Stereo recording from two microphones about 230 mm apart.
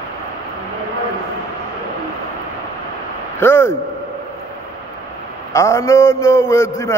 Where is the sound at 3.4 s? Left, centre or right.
Centre.